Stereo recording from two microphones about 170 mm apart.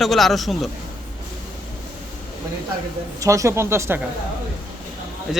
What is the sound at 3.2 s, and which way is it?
Speech, 20° right (ahead or behind).